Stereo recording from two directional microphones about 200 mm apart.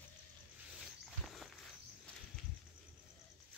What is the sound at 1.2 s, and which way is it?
Walk, centre (ahead or behind).